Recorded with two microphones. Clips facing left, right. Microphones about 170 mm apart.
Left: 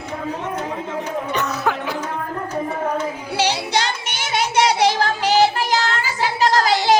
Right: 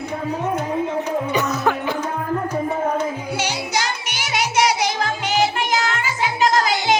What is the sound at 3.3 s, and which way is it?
Music, 30° left (ahead or behind).